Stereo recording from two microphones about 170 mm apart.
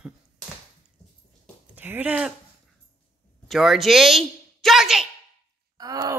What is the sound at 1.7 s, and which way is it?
Speech, 10° right (ahead or behind).